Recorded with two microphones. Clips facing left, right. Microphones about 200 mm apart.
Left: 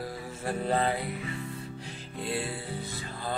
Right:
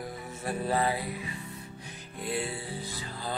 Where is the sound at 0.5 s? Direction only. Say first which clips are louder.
Left 1 dB; 25° left (ahead or behind).